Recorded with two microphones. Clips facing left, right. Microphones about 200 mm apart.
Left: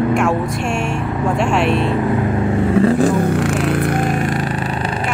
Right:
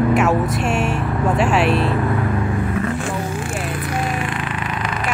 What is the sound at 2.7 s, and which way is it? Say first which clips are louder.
Vehicle: left 9 dB; 35° left (ahead or behind).